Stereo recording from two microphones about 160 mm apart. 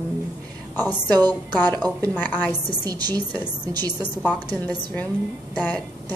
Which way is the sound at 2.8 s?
25° right (ahead or behind).